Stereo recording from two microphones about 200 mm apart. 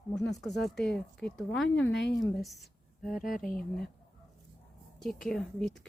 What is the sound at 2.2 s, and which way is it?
Speech, centre (ahead or behind).